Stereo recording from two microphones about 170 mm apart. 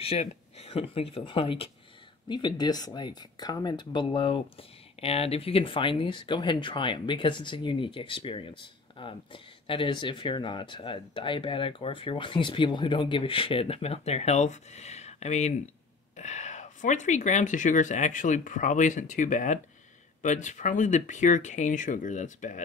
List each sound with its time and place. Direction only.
0.0 s speech: 35° left (ahead or behind)